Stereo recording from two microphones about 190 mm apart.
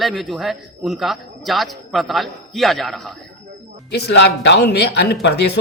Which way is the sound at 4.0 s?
60° left (ahead or behind).